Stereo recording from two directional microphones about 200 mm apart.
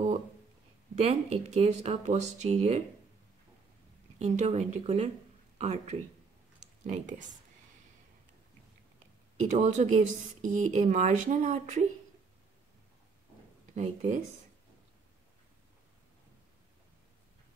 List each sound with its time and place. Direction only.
0.9 s speech: 35° right (ahead or behind)
4.2 s speech: 35° right (ahead or behind)
9.4 s speech: 35° right (ahead or behind)